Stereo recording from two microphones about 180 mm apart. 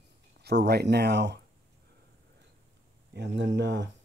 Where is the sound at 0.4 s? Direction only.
65° right (ahead or behind).